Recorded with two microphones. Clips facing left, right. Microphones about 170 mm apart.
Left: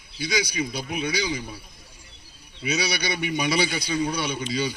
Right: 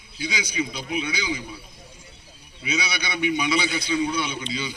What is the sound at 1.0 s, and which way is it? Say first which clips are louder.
Speech: left 5 dB; 40° left (ahead or behind).